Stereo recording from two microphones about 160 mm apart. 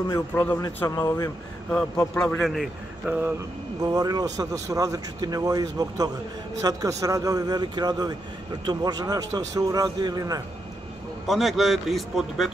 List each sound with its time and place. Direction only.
0.5 s speech: 15° left (ahead or behind)
2.1 s a man's voice: 5° left (ahead or behind); by 3.3 s 10° right (ahead or behind)
3.8 s speech: 25° right (ahead or behind)
11.2 s a man's voice: centre (ahead or behind)